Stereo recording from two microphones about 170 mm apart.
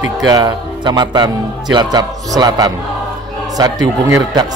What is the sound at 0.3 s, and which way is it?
Speech, 25° right (ahead or behind).